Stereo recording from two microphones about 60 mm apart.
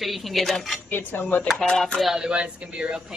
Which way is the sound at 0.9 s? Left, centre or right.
Left.